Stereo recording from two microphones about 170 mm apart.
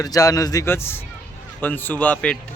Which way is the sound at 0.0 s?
20° left (ahead or behind).